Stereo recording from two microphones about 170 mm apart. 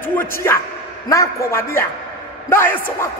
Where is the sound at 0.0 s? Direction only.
15° left (ahead or behind).